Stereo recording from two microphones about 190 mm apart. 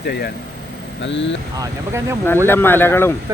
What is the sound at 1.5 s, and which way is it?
Speech, 15° right (ahead or behind).